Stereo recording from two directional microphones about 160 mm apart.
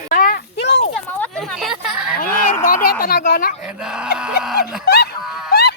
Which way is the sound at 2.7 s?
60° left (ahead or behind).